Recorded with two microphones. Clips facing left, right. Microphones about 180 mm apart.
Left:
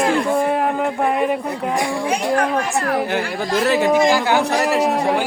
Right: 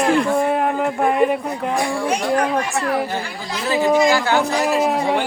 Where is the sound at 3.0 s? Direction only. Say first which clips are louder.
Left 4 dB; 70° left (ahead or behind).